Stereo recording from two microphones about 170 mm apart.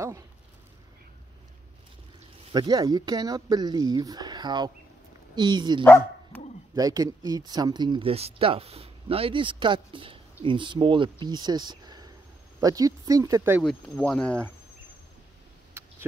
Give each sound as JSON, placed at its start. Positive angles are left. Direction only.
{"t": 2.5, "sound": "speech", "side_deg": -25}
{"t": 5.9, "sound": "speech", "side_deg": 10}
{"t": 6.7, "sound": "speech", "side_deg": -20}
{"t": 13.6, "sound": "speech", "side_deg": 5}